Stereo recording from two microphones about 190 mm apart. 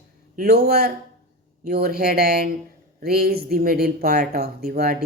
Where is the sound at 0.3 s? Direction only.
55° right (ahead or behind).